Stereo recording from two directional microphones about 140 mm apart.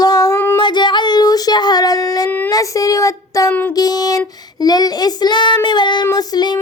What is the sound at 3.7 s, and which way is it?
Child singing, 25° left (ahead or behind).